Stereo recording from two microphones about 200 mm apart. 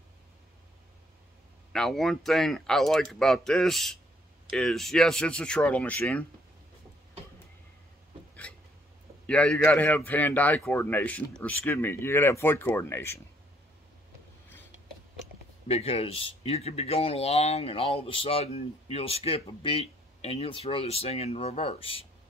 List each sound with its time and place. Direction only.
1.7 s speech: centre (ahead or behind)
9.2 s a man's voice: 5° left (ahead or behind)
15.7 s speech: 30° left (ahead or behind)